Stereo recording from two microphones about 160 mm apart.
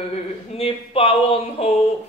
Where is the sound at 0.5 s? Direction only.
35° left (ahead or behind).